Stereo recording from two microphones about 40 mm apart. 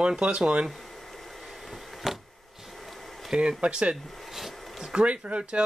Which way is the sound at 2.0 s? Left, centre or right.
Centre.